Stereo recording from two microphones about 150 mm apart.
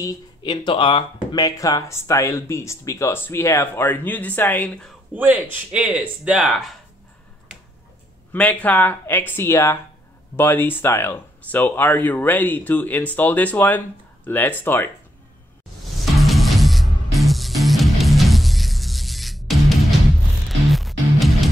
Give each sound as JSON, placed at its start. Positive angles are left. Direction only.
{"t": 0.0, "sound": "speech", "side_deg": 25}
{"t": 5.1, "sound": "speech", "side_deg": -10}
{"t": 8.3, "sound": "speech", "side_deg": 10}
{"t": 16.2, "sound": "music", "side_deg": 0}
{"t": 20.7, "sound": "music", "side_deg": 0}